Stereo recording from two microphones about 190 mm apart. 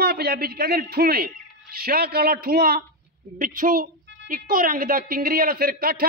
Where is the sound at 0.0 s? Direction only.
55° right (ahead or behind).